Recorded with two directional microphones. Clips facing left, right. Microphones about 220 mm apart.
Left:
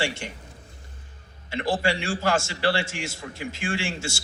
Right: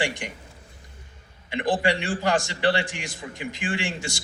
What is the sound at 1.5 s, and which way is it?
A man's voice, 15° right (ahead or behind).